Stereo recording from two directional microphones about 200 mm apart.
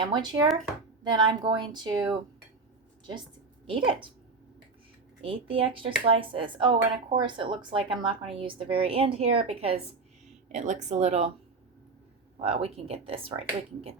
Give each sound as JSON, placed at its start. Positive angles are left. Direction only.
{"t": 0.0, "sound": "speech", "side_deg": -20}
{"t": 3.7, "sound": "speech", "side_deg": -25}
{"t": 5.2, "sound": "speech", "side_deg": -25}
{"t": 12.4, "sound": "speech", "side_deg": -30}